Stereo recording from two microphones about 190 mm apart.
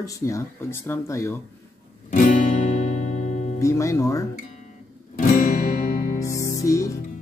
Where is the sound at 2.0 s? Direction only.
45° left (ahead or behind).